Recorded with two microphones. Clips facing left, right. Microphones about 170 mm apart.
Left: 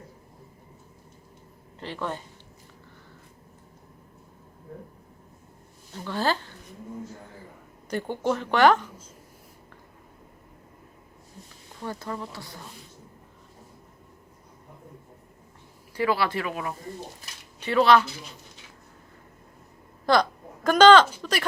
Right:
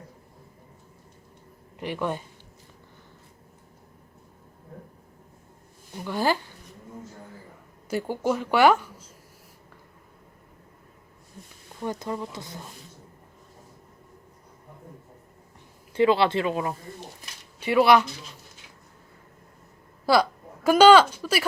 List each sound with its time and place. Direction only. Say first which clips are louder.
1.8 s speech: right 4 dB; 15° right (ahead or behind)
5.9 s speech: right 2 dB; 15° right (ahead or behind)
7.9 s speech: right 1 dB; 5° right (ahead or behind)
11.8 s speech: right 3 dB; 20° right (ahead or behind)
16.0 s speech: right 5 dB; 25° right (ahead or behind)
17.6 s speech: right 1 dB; 15° right (ahead or behind)
20.1 s a woman's voice: right 1 dB; 5° right (ahead or behind)